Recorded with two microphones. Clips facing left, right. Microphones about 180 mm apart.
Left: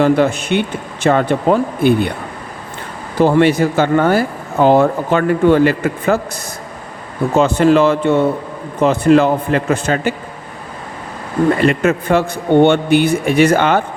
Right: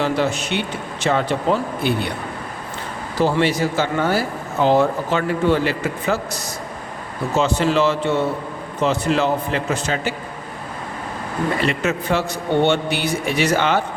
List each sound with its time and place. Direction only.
0.0 s speech: 55° left (ahead or behind)
3.2 s speech: 55° left (ahead or behind)
7.3 s speech: 55° left (ahead or behind)
11.6 s speech: 55° left (ahead or behind)